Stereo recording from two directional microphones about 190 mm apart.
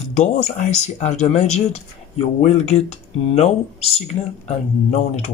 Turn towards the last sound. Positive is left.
turn(degrees=35)  # may be behind; listen again after turning